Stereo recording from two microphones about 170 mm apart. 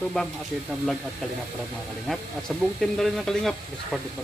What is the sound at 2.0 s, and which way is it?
Speech, centre (ahead or behind).